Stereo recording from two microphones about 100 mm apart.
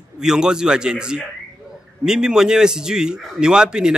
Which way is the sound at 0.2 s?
5° right (ahead or behind).